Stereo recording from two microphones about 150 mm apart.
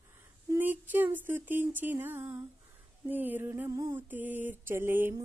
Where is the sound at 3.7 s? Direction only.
25° right (ahead or behind).